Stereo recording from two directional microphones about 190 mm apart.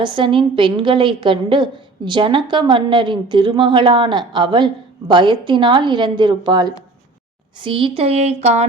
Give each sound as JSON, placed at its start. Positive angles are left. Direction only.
{"t": 0.0, "sound": "a woman's voice", "side_deg": -25}